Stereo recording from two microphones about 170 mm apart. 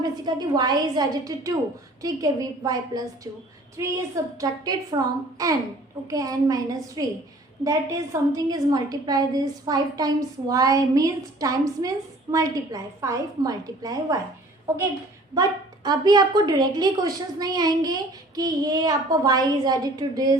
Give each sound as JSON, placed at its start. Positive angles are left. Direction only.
{"t": 0.0, "sound": "a woman's voice", "side_deg": -25}
{"t": 15.4, "sound": "a woman's voice", "side_deg": -25}